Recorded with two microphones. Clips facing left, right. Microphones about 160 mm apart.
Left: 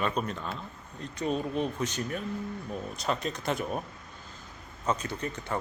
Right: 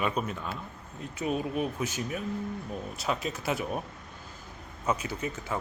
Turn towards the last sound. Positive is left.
turn(degrees=-5)  # may be behind; listen again after turning